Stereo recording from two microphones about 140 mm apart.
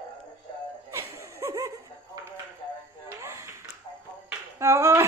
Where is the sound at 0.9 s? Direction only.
20° right (ahead or behind).